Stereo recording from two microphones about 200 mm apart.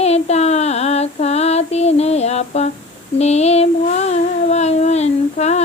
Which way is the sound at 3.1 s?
35° left (ahead or behind).